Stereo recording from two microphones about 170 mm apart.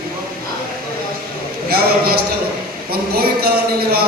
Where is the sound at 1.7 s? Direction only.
65° right (ahead or behind).